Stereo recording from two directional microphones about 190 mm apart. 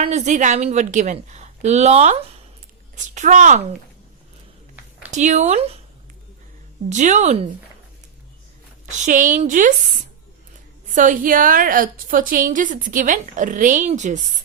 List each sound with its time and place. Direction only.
0.0 s a woman's voice: 35° right (ahead or behind)
5.1 s a woman's voice: 40° right (ahead or behind)
6.9 s a woman's voice: 40° right (ahead or behind)
8.9 s a woman's voice: 40° right (ahead or behind)
10.9 s a woman's voice: 45° right (ahead or behind)